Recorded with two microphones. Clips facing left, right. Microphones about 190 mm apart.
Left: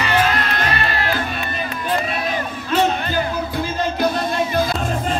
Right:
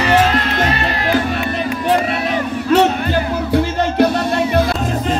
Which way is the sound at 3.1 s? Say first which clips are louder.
Right 5 dB; 70° right (ahead or behind).